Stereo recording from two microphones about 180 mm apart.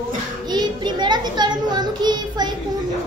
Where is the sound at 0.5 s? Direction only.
25° right (ahead or behind).